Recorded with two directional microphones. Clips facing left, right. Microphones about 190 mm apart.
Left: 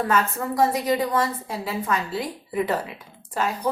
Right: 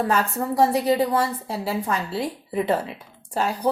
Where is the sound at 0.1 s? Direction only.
35° right (ahead or behind).